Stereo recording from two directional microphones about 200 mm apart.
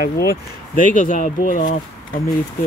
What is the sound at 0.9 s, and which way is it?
Speech, 40° left (ahead or behind).